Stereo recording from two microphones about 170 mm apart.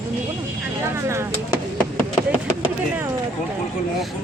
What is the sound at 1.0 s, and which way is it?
Speech, 15° right (ahead or behind).